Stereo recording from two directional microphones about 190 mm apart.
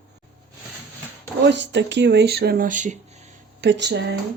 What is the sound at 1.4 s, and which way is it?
Speech, 65° right (ahead or behind).